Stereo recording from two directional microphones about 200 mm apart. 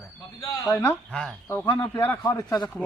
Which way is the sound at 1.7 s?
20° left (ahead or behind).